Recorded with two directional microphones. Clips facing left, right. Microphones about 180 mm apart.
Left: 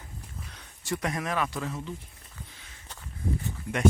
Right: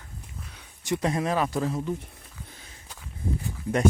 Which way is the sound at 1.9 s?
55° right (ahead or behind).